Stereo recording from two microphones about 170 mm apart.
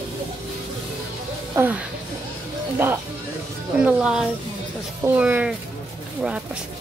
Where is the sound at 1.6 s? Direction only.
10° right (ahead or behind).